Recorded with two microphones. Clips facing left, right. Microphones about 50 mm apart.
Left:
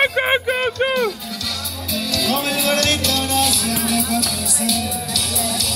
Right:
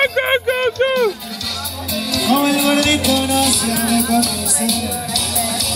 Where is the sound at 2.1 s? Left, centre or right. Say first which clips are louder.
Right 6 dB; centre.